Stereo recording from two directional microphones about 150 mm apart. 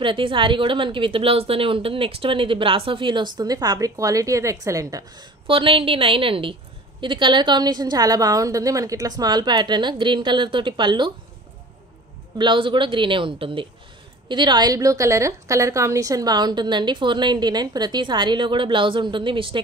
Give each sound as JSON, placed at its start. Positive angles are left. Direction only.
{"t": 0.0, "sound": "a woman's voice", "side_deg": -35}
{"t": 5.5, "sound": "a woman's voice", "side_deg": -35}
{"t": 12.4, "sound": "a woman's voice", "side_deg": -35}